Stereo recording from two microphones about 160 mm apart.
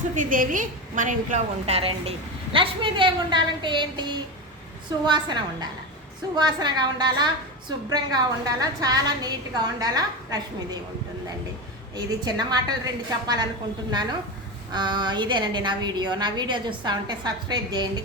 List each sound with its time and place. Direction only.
0.2 s a woman's voice: 55° right (ahead or behind); by 10.8 s 25° right (ahead or behind)
11.9 s a woman's voice: 25° right (ahead or behind)
14.7 s a woman's voice: 30° right (ahead or behind)